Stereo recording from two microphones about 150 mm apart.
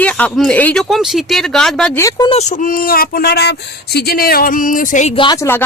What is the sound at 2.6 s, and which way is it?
Speech, 70° left (ahead or behind).